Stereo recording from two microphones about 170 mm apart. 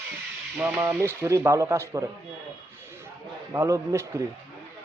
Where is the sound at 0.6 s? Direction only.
10° right (ahead or behind).